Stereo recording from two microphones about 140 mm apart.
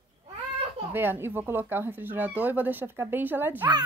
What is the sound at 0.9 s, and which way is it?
Speech, 15° right (ahead or behind).